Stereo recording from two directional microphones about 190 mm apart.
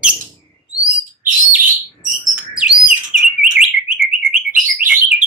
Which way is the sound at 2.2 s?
5° right (ahead or behind).